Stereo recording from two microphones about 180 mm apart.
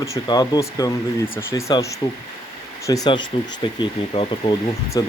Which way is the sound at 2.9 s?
20° left (ahead or behind).